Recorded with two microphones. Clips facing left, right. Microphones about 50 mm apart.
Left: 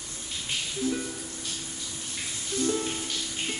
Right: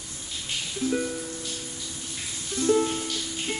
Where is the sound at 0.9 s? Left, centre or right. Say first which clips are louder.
Right 5 dB; centre.